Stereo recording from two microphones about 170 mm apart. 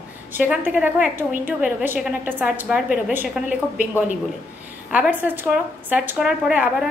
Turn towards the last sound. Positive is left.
turn(degrees=-5)  # may be behind; listen again after turning